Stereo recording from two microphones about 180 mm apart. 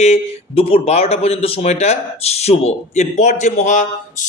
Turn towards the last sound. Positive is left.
turn(degrees=45)  # may be behind; listen again after turning